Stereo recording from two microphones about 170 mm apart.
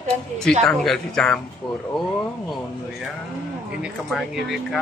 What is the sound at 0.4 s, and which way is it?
Speech, 5° left (ahead or behind).